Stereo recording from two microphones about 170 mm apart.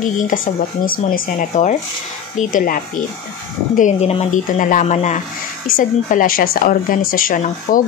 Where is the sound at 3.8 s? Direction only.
40° left (ahead or behind).